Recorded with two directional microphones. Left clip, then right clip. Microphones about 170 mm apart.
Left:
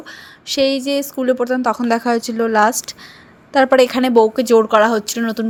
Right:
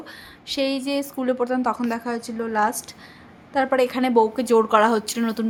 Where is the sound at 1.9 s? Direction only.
40° left (ahead or behind).